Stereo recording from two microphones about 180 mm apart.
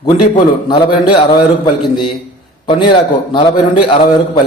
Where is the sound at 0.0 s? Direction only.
25° left (ahead or behind).